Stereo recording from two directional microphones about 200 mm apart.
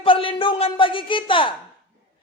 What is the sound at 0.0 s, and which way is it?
A man's voice, 25° left (ahead or behind).